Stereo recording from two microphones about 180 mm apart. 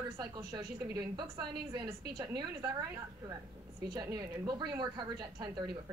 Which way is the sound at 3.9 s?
20° right (ahead or behind).